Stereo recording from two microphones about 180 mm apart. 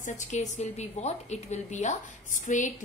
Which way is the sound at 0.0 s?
40° left (ahead or behind).